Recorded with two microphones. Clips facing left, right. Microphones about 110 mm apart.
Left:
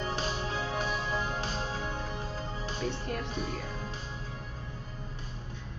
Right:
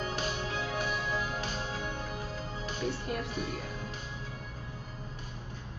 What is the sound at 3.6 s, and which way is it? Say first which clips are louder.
Music: left 1 dB; 30° left (ahead or behind).